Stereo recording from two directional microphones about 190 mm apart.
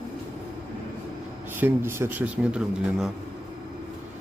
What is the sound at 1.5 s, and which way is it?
A man's voice, 10° right (ahead or behind).